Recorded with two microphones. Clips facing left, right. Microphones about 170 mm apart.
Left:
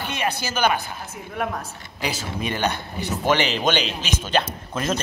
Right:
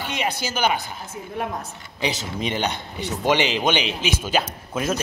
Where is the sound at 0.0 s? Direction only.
15° right (ahead or behind).